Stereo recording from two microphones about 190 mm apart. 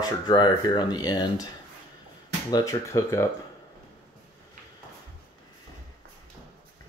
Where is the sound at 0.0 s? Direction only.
20° left (ahead or behind).